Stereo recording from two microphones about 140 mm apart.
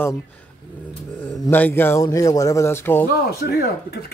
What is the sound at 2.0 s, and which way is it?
Speech, 25° left (ahead or behind).